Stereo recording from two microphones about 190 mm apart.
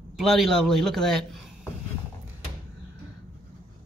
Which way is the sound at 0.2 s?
Centre (ahead or behind).